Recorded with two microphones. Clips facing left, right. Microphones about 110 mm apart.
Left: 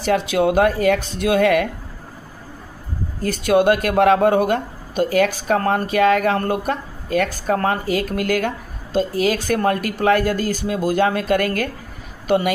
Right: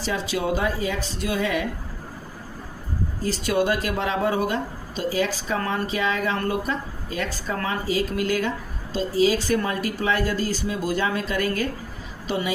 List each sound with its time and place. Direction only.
0.0 s speech: 60° left (ahead or behind)
3.2 s speech: 55° left (ahead or behind)